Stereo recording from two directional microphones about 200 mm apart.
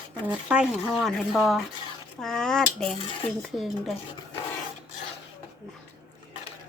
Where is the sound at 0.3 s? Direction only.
5° right (ahead or behind).